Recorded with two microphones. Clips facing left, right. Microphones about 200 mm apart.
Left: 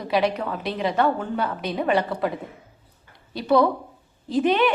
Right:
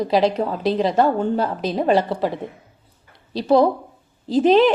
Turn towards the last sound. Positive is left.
turn(degrees=-30)  # may be behind; listen again after turning